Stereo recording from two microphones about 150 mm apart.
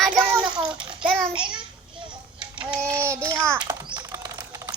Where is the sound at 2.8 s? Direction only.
20° right (ahead or behind).